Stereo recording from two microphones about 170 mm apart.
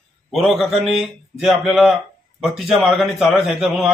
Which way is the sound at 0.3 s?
Centre (ahead or behind).